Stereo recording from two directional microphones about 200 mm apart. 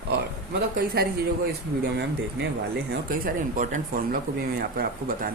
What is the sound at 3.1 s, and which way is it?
Speech, 45° right (ahead or behind).